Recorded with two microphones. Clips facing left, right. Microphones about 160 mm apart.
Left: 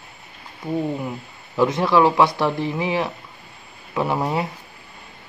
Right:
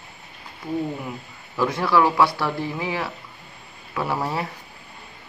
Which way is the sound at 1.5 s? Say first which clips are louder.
Left 3 dB; 20° left (ahead or behind).